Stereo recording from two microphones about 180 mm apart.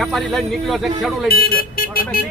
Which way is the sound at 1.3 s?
60° left (ahead or behind).